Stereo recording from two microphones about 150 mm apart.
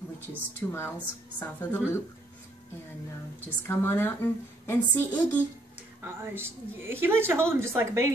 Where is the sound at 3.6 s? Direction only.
15° left (ahead or behind).